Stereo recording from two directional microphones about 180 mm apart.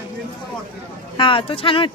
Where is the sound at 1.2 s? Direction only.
30° left (ahead or behind).